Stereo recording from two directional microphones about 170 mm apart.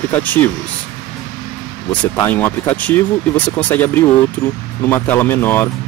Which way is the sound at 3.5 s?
10° left (ahead or behind).